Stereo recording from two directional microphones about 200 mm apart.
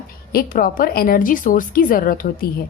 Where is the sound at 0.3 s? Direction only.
45° left (ahead or behind).